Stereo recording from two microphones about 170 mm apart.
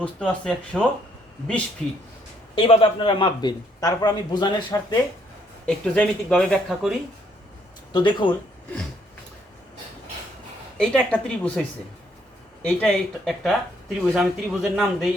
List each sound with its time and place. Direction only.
0.0 s speech: 5° left (ahead or behind)
2.6 s a man's voice: 30° left (ahead or behind)
5.6 s speech: 5° left (ahead or behind)
7.9 s a man's voice: 25° left (ahead or behind)
10.8 s speech: 5° left (ahead or behind)
12.6 s speech: 5° left (ahead or behind)